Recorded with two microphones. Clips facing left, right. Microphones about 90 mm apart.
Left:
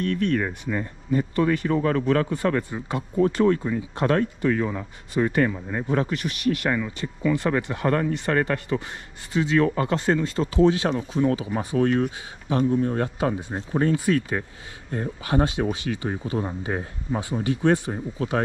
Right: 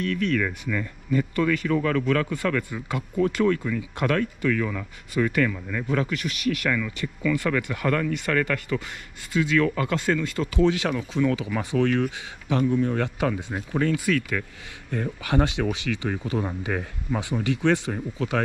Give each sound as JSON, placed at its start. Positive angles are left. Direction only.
{"t": 0.2, "sound": "speech", "side_deg": 25}
{"t": 11.1, "sound": "speech", "side_deg": 35}
{"t": 13.0, "sound": "speech", "side_deg": 25}